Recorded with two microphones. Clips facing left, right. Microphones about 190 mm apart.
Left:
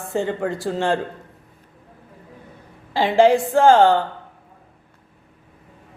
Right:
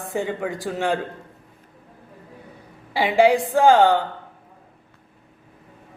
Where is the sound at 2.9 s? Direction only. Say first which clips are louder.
Left 2 dB; 15° right (ahead or behind).